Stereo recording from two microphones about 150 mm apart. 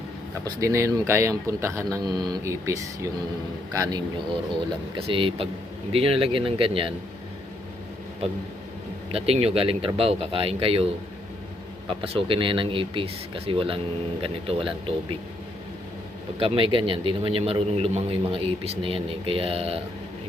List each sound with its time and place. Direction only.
0.4 s speech: 20° right (ahead or behind)
4.9 s a man's voice: 35° right (ahead or behind)
9.1 s a man's voice: 40° right (ahead or behind)
11.9 s a man's voice: 35° right (ahead or behind)
16.4 s a man's voice: 35° right (ahead or behind)